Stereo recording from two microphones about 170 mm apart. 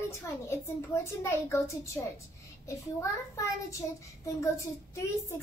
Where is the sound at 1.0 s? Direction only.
15° left (ahead or behind).